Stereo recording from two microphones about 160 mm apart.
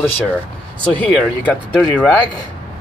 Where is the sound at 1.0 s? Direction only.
5° left (ahead or behind).